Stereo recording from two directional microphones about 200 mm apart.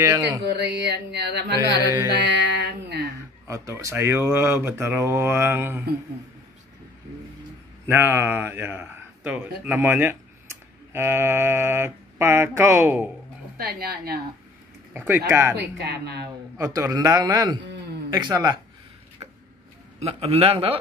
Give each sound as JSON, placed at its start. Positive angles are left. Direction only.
{"t": 0.6, "sound": "mantra", "side_deg": -60}
{"t": 3.4, "sound": "speech", "side_deg": -15}
{"t": 7.9, "sound": "speech", "side_deg": -10}
{"t": 13.6, "sound": "a woman's voice", "side_deg": -50}
{"t": 15.0, "sound": "speech", "side_deg": -10}
{"t": 15.5, "sound": "mantra", "side_deg": -55}
{"t": 16.5, "sound": "a man's voice", "side_deg": -15}
{"t": 20.0, "sound": "a man's voice", "side_deg": -30}